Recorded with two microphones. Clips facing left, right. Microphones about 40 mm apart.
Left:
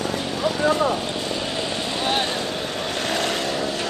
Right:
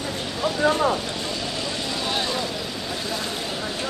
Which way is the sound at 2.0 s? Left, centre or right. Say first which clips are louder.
Left 3 dB; left.